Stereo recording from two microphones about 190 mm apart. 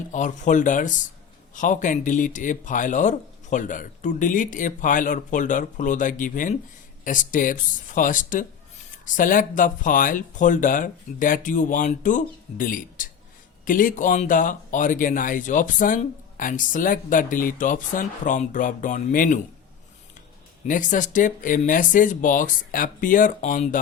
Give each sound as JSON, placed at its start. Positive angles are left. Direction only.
{"t": 0.1, "sound": "speech", "side_deg": 40}
{"t": 20.7, "sound": "speech", "side_deg": 45}